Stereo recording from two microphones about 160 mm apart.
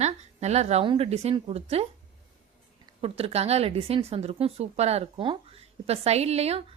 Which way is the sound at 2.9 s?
35° right (ahead or behind).